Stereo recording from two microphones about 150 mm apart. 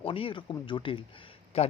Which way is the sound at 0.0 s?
35° left (ahead or behind).